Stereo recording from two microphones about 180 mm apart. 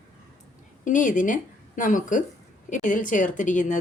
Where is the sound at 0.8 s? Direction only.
45° left (ahead or behind).